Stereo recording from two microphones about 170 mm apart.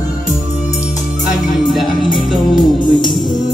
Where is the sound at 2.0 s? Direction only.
25° left (ahead or behind).